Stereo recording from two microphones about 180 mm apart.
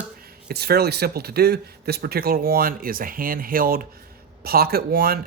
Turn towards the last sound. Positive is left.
turn(degrees=-60)  # may be behind; listen again after turning